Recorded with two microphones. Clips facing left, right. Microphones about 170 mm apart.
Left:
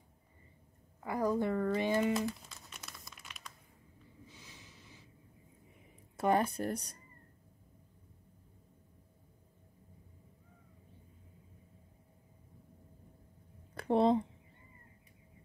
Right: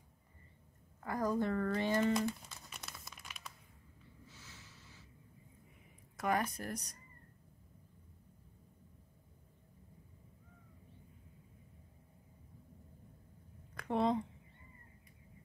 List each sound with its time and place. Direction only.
1.0 s speech: 15° left (ahead or behind)
2.1 s crumpling: centre (ahead or behind)
4.3 s a sound: 15° left (ahead or behind)
6.1 s speech: 30° left (ahead or behind)
13.7 s speech: 30° left (ahead or behind)